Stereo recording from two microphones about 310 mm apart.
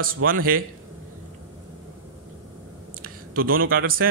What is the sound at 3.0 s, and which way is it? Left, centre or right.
Speech, right.